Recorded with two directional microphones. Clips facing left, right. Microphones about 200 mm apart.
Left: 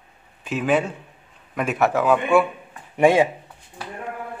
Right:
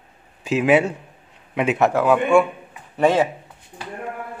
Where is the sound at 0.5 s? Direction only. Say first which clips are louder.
Right 4 dB; 75° right (ahead or behind).